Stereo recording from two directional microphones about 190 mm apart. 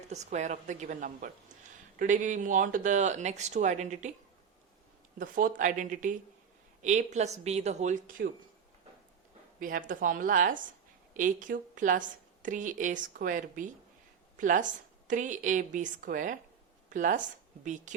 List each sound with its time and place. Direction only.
0.1 s speech: 35° right (ahead or behind)
5.2 s a woman's voice: 45° right (ahead or behind)
9.6 s a woman's voice: 45° right (ahead or behind)